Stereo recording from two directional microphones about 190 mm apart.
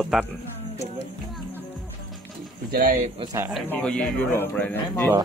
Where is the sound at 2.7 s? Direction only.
50° right (ahead or behind).